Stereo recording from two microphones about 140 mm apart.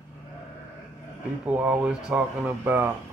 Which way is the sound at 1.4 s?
10° right (ahead or behind).